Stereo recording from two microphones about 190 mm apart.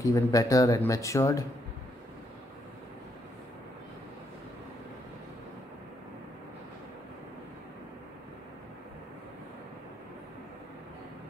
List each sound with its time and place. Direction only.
0.0 s speech: 15° left (ahead or behind)